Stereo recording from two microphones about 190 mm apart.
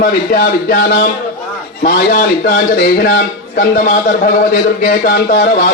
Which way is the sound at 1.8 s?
50° left (ahead or behind).